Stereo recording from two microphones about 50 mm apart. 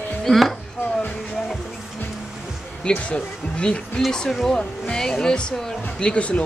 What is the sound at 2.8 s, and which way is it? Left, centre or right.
Speech, centre.